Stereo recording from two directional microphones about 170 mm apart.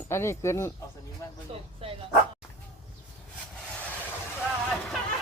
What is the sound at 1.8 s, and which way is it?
Dog, 35° right (ahead or behind).